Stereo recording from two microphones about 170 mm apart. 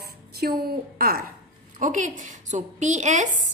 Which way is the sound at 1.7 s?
50° right (ahead or behind).